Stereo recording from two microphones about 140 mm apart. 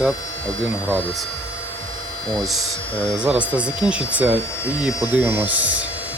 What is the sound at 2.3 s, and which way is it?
Speech, centre (ahead or behind).